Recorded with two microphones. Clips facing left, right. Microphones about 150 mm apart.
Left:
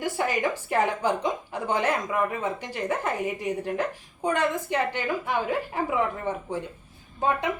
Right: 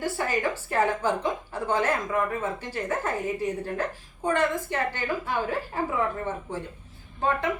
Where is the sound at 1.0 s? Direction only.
15° left (ahead or behind).